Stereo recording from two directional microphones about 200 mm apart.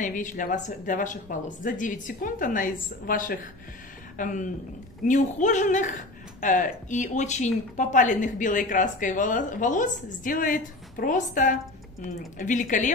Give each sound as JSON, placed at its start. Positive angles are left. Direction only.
{"t": 0.0, "sound": "speech", "side_deg": 40}